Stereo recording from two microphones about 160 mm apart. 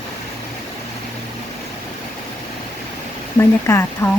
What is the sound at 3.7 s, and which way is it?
Speech, 15° left (ahead or behind).